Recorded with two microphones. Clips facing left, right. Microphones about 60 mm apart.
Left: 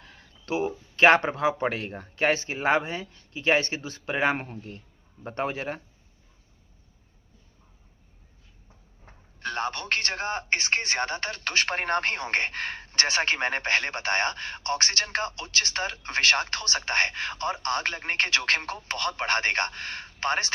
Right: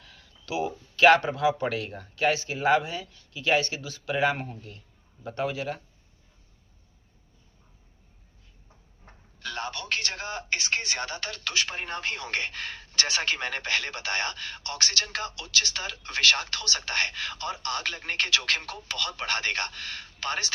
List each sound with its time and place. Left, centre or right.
0.0 s a man's voice: left
9.4 s a man's voice: left